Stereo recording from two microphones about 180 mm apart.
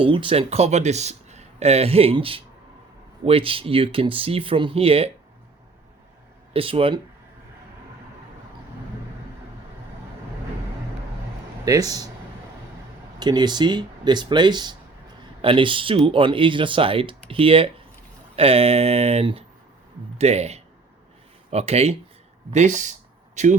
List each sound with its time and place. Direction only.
0.0 s speech: 30° right (ahead or behind)
6.5 s speech: 30° right (ahead or behind)
11.6 s speech: 20° right (ahead or behind)
13.1 s speech: 25° right (ahead or behind); by 23.6 s 40° right (ahead or behind)